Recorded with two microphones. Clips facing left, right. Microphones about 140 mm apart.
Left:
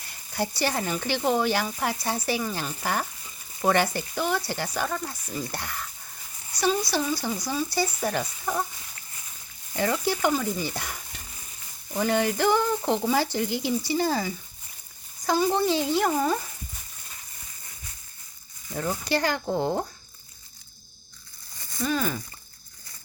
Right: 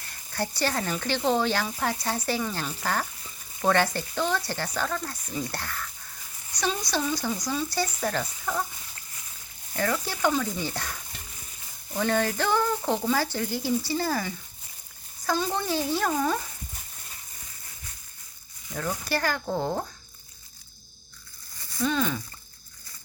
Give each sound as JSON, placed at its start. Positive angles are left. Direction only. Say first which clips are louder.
{"t": 0.3, "sound": "speech", "louder": "left 1 dB", "side_deg": 15}
{"t": 9.7, "sound": "speech", "louder": "left 3 dB", "side_deg": 15}
{"t": 15.3, "sound": "speech", "louder": "left 4 dB", "side_deg": 15}
{"t": 18.7, "sound": "speech", "louder": "left 2 dB", "side_deg": 20}
{"t": 21.8, "sound": "speech", "louder": "right 1 dB", "side_deg": 5}